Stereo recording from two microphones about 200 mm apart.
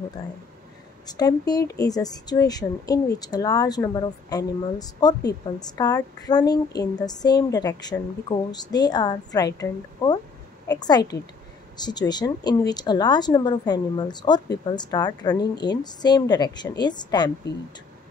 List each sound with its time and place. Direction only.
1.0 s speech: 20° left (ahead or behind)